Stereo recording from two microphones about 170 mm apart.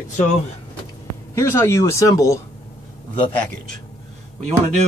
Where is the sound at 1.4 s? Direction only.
15° left (ahead or behind).